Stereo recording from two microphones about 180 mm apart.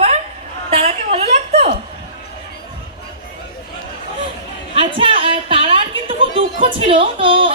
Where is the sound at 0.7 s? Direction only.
35° right (ahead or behind).